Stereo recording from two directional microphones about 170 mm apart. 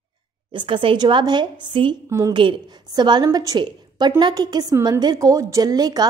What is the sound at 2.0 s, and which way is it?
A woman's voice, 20° right (ahead or behind).